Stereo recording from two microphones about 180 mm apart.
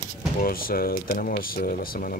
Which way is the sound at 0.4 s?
55° left (ahead or behind).